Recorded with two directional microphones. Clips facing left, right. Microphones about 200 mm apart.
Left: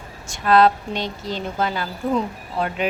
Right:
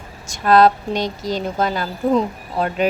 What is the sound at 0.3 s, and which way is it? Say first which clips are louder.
Speech: right 2 dB; 40° right (ahead or behind).